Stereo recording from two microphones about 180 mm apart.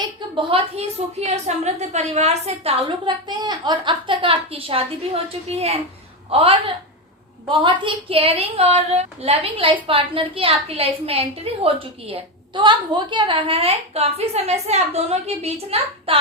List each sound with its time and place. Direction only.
0.0 s a woman's voice: 30° right (ahead or behind)
2.8 s a woman's voice: 25° right (ahead or behind)